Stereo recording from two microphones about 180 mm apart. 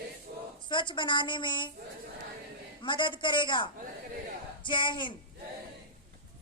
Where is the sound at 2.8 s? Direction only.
25° left (ahead or behind).